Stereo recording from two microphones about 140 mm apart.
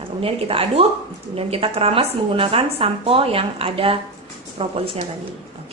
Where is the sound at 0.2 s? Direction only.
40° right (ahead or behind).